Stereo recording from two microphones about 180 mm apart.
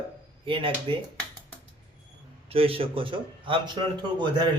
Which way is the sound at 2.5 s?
30° right (ahead or behind).